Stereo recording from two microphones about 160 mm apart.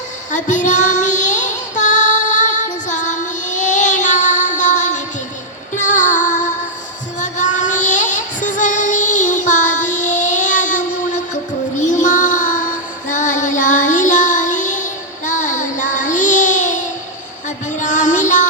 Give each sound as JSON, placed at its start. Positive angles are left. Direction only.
{"t": 0.3, "sound": "female singing", "side_deg": 50}
{"t": 5.7, "sound": "music", "side_deg": 50}
{"t": 11.8, "sound": "child singing", "side_deg": 50}
{"t": 17.7, "sound": "music", "side_deg": 50}